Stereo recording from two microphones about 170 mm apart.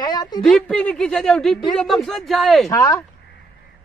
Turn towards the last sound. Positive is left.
turn(degrees=20)  # may be behind; listen again after turning